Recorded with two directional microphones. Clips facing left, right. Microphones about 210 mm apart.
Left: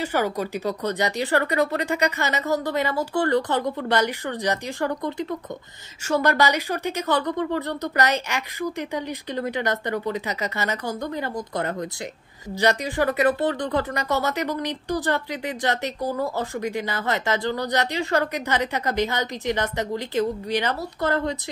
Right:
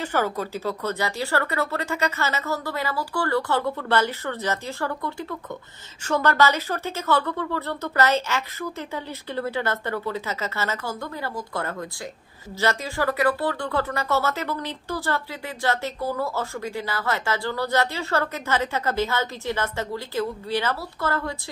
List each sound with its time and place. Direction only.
0.0 s speech: 15° left (ahead or behind)